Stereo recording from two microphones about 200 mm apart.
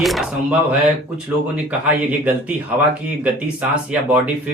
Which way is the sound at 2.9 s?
5° right (ahead or behind).